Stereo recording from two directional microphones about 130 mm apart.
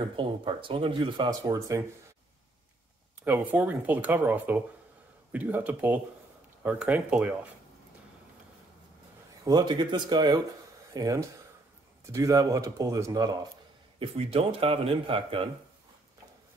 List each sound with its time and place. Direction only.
0.1 s speech: 40° right (ahead or behind)
1.4 s speech: 25° right (ahead or behind)
3.3 s speech: 10° right (ahead or behind)
9.4 s speech: 30° right (ahead or behind)
13.9 s a man's voice: 45° right (ahead or behind)